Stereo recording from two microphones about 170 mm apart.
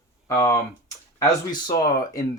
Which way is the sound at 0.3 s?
20° left (ahead or behind).